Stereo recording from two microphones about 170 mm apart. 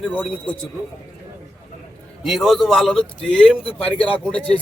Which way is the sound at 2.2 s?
Centre (ahead or behind).